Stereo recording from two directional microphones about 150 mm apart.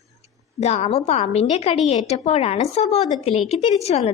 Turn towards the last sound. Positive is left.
turn(degrees=45)  # may be behind; listen again after turning